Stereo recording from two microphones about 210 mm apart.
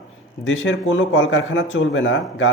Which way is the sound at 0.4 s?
65° left (ahead or behind).